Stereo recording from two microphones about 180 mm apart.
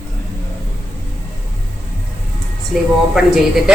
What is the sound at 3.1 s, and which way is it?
Speech, 5° right (ahead or behind).